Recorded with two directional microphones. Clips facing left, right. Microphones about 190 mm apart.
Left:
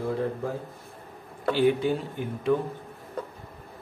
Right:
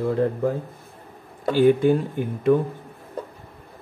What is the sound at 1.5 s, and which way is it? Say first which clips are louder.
Speech: right 6 dB; 50° right (ahead or behind).